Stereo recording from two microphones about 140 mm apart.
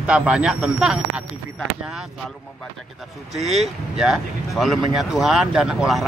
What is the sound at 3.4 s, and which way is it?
Speech, 50° right (ahead or behind).